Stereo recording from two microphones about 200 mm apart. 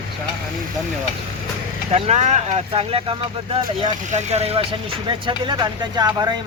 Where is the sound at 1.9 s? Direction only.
30° right (ahead or behind).